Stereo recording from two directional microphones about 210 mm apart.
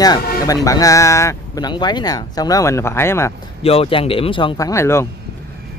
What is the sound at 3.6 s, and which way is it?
Speech, 25° left (ahead or behind).